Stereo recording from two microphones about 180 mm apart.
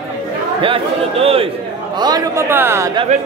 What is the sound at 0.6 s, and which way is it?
Speech, 30° right (ahead or behind).